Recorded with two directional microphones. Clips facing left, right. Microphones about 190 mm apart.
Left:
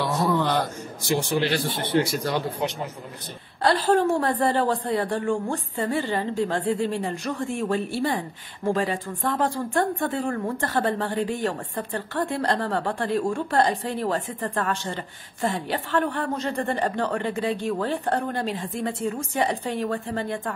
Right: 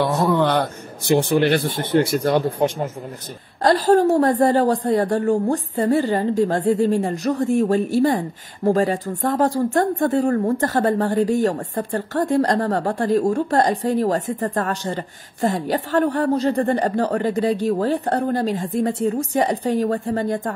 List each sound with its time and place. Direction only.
0.0 s a man's voice: 65° right (ahead or behind); by 20.5 s 40° right (ahead or behind)